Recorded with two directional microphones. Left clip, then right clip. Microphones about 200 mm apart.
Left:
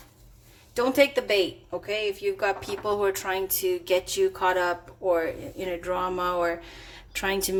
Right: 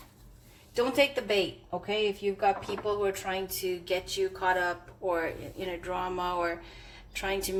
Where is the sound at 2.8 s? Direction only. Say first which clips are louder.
Left 5 dB; 50° left (ahead or behind).